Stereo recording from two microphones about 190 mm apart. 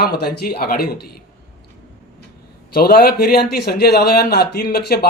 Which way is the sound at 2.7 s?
55° left (ahead or behind).